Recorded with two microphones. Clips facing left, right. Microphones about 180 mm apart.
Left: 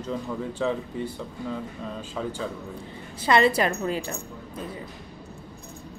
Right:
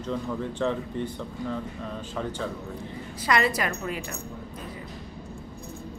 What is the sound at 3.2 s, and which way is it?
Speech, 25° left (ahead or behind).